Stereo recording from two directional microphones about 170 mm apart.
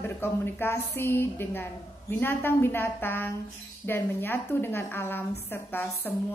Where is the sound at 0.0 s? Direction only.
15° left (ahead or behind).